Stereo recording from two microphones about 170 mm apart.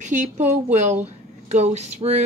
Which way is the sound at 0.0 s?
45° right (ahead or behind).